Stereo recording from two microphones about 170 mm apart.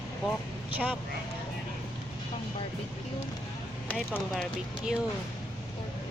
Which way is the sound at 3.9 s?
5° left (ahead or behind).